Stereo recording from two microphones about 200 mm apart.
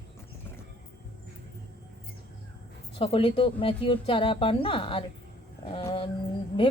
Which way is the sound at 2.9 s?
30° left (ahead or behind).